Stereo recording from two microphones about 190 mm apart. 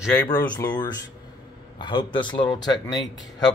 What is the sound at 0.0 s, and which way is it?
A man's voice, 15° left (ahead or behind).